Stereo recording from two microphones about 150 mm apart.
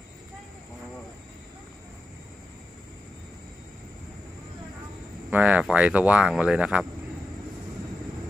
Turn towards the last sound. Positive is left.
turn(degrees=-5)  # may be behind; listen again after turning